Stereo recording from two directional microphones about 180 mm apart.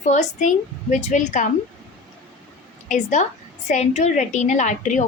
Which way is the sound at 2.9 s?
45° left (ahead or behind).